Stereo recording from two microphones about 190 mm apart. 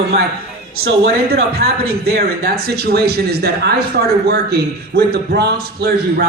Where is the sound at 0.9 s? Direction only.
55° right (ahead or behind).